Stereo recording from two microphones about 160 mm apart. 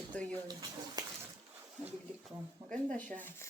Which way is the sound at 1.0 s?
25° right (ahead or behind).